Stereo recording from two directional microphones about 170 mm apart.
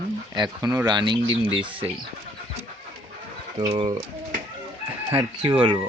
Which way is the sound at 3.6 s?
35° right (ahead or behind).